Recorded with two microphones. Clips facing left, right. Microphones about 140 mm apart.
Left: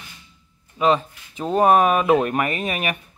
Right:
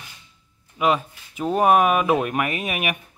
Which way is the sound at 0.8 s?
10° right (ahead or behind).